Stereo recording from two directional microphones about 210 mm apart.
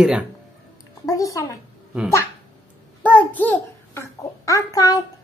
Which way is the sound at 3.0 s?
10° left (ahead or behind).